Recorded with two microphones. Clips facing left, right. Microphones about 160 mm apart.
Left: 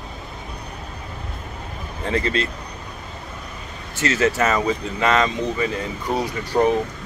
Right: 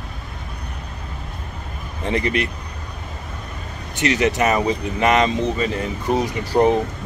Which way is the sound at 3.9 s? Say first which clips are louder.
Right 1 dB; 20° right (ahead or behind).